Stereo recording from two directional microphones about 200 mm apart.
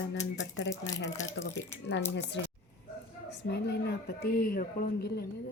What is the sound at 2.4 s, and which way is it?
Speech, 65° left (ahead or behind).